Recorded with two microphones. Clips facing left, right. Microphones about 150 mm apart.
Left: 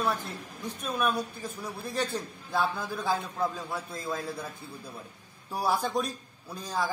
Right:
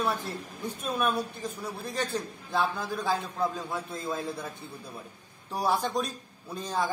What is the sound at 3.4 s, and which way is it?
Speech, centre (ahead or behind).